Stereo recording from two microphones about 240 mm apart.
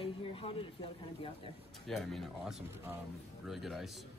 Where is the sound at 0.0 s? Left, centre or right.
Left.